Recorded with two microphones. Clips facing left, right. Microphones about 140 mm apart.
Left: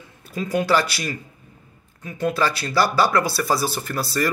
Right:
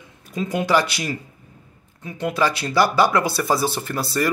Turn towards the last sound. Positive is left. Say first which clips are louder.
# right 1 dB
turn(degrees=-20)  # may be behind; listen again after turning